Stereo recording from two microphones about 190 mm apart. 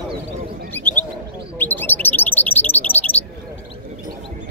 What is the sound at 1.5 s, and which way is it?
Bird, 10° left (ahead or behind).